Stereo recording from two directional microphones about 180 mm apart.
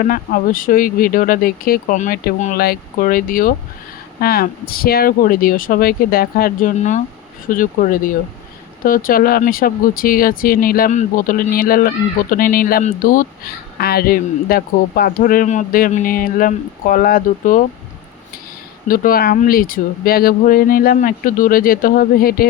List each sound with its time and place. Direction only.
0.0 s speech: 50° left (ahead or behind)
18.9 s speech: 50° left (ahead or behind)